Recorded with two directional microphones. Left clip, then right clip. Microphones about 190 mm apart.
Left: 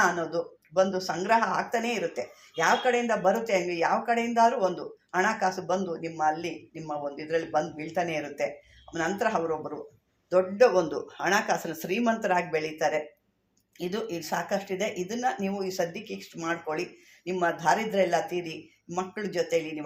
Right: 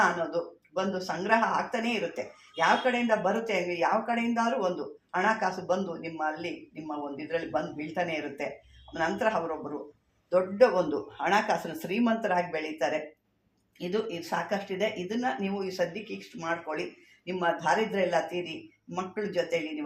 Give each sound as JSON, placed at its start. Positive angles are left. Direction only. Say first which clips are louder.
{"t": 0.3, "sound": "speech", "louder": "left 1 dB", "side_deg": 40}